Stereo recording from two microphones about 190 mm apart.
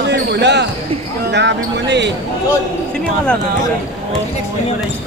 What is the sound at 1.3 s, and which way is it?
Speech, 65° right (ahead or behind).